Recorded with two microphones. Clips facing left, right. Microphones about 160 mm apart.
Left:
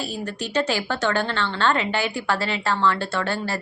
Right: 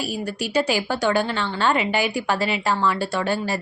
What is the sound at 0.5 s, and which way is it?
A woman's voice, 10° right (ahead or behind).